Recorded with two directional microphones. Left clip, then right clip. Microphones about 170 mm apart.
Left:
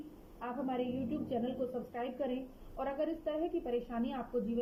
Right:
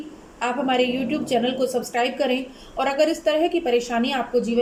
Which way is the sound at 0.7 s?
15° right (ahead or behind).